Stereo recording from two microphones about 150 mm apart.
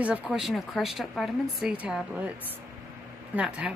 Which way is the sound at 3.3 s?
10° right (ahead or behind).